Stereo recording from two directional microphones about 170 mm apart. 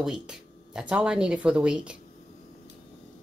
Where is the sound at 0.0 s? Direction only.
5° right (ahead or behind).